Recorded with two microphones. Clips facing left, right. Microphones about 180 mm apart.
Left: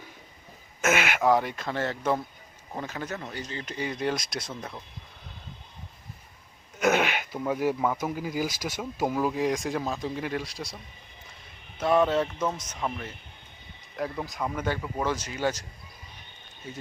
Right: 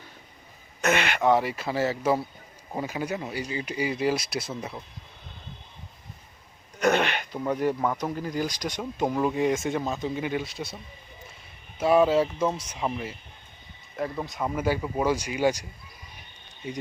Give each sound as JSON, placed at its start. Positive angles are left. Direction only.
{"t": 0.8, "sound": "speech", "side_deg": 5}
{"t": 6.7, "sound": "speech", "side_deg": 5}
{"t": 11.8, "sound": "speech", "side_deg": -5}
{"t": 16.6, "sound": "speech", "side_deg": -15}